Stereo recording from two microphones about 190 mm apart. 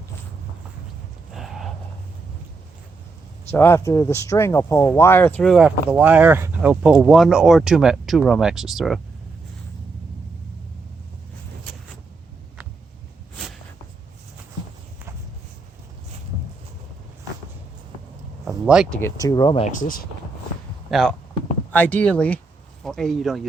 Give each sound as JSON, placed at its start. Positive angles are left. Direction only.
{"t": 1.3, "sound": "a sound", "side_deg": 0}
{"t": 3.5, "sound": "speech", "side_deg": 10}
{"t": 18.4, "sound": "a sound", "side_deg": -5}
{"t": 18.9, "sound": "speech", "side_deg": 15}
{"t": 19.6, "sound": "speech", "side_deg": 45}
{"t": 20.9, "sound": "speech", "side_deg": 0}